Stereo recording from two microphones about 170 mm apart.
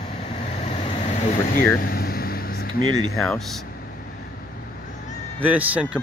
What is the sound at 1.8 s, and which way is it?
Vehicle, 60° left (ahead or behind).